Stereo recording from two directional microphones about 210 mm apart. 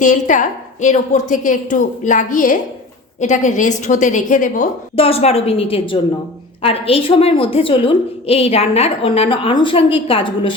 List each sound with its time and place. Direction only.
0.0 s a woman's voice: 35° left (ahead or behind)